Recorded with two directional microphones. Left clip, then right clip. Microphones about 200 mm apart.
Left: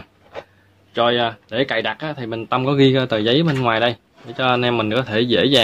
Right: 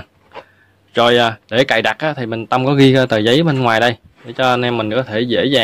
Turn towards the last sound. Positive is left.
turn(degrees=-10)  # may be behind; listen again after turning